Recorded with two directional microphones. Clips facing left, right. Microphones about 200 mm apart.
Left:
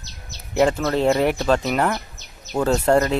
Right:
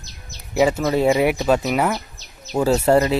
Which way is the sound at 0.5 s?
10° right (ahead or behind).